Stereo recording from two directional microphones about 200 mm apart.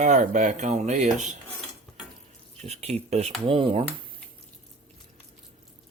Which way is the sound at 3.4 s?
25° right (ahead or behind).